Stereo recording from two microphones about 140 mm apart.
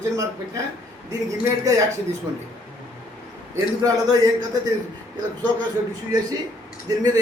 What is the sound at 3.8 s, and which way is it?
Speech, 25° right (ahead or behind).